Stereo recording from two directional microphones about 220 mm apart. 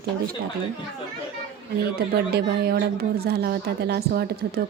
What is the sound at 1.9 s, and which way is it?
A woman's voice, 45° right (ahead or behind).